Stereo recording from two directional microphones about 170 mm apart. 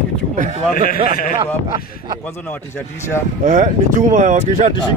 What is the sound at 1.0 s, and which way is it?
Speech, 55° left (ahead or behind).